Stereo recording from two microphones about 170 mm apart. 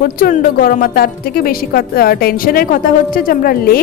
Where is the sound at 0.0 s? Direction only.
55° left (ahead or behind).